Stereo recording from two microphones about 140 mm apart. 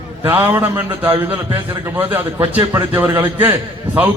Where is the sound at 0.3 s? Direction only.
15° right (ahead or behind).